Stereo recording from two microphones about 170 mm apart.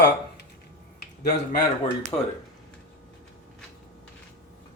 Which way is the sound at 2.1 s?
25° left (ahead or behind).